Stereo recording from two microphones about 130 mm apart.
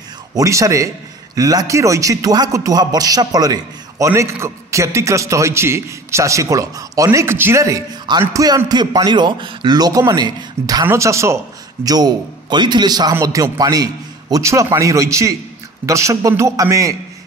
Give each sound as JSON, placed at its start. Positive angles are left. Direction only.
{"t": 0.3, "sound": "a man's voice", "side_deg": -25}